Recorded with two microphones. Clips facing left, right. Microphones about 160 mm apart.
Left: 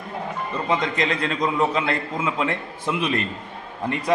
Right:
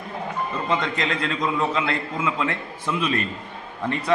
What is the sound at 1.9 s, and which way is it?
Speech, 30° left (ahead or behind).